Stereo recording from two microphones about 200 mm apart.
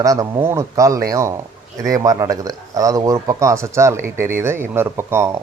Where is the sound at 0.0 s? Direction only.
15° right (ahead or behind).